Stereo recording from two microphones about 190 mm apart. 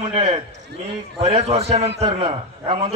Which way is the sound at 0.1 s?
25° right (ahead or behind).